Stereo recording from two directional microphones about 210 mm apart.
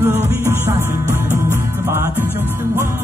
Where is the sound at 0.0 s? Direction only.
10° right (ahead or behind).